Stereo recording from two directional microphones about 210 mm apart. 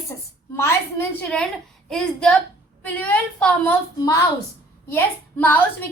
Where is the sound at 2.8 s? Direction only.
5° left (ahead or behind).